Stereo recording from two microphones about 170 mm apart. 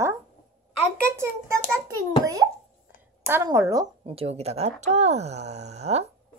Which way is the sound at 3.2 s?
15° right (ahead or behind).